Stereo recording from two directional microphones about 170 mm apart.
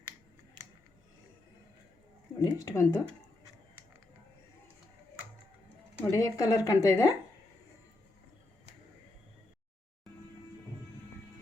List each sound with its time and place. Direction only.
2.4 s speech: 20° left (ahead or behind)
6.1 s speech: 20° left (ahead or behind)